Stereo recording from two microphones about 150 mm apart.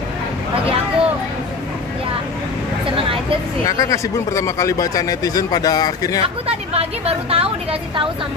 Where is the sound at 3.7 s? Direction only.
20° left (ahead or behind).